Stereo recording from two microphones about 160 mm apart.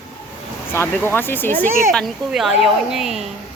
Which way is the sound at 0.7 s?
15° left (ahead or behind).